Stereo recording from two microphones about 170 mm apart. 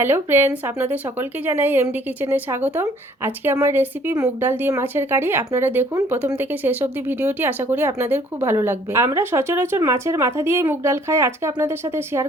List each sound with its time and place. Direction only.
0.0 s speech: 15° right (ahead or behind)